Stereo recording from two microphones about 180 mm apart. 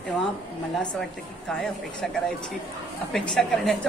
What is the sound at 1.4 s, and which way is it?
Speech, 5° left (ahead or behind).